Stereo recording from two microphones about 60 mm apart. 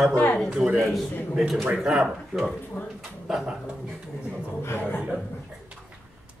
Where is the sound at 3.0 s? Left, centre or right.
Centre.